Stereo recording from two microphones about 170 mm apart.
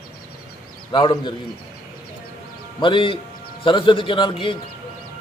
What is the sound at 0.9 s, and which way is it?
Speech, 25° left (ahead or behind).